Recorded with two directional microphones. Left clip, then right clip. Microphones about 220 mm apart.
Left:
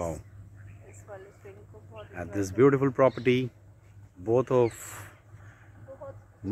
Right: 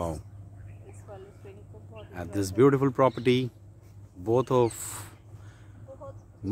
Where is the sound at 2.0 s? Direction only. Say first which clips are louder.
Even; 10° right (ahead or behind).